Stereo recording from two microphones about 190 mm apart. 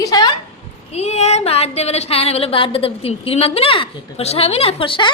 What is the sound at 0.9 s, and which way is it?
A woman's voice, 35° left (ahead or behind).